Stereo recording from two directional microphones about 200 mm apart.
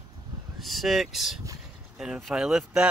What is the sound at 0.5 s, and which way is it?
Speech, centre (ahead or behind).